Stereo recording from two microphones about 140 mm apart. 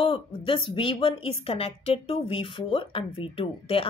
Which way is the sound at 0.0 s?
40° left (ahead or behind).